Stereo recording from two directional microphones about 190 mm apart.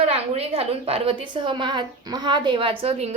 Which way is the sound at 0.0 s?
35° right (ahead or behind).